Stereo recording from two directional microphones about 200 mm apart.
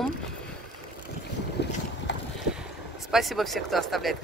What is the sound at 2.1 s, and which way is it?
Vehicle, 60° left (ahead or behind).